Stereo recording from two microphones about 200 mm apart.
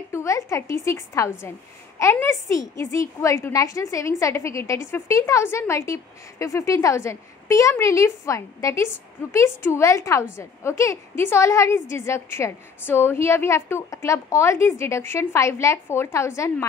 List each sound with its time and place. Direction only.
0.1 s a woman's voice: 15° left (ahead or behind)